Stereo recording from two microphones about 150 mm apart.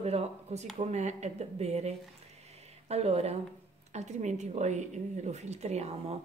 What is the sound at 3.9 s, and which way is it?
A woman's voice, 50° right (ahead or behind).